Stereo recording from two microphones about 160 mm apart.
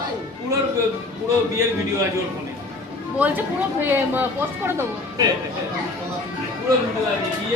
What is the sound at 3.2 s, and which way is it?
A woman's voice, 10° right (ahead or behind).